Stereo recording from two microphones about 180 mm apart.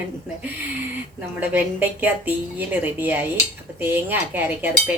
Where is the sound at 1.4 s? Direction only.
10° right (ahead or behind).